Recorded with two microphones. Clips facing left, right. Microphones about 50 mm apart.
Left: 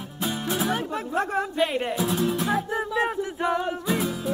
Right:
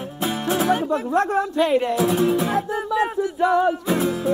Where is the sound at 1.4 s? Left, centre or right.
Centre.